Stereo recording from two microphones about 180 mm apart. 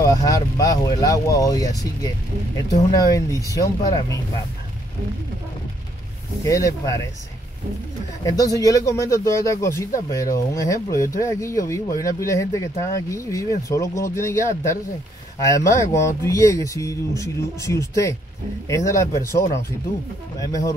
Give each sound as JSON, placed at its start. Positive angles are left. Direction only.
{"t": 0.0, "sound": "speech", "side_deg": 20}
{"t": 6.4, "sound": "speech", "side_deg": 20}
{"t": 8.3, "sound": "speech", "side_deg": 20}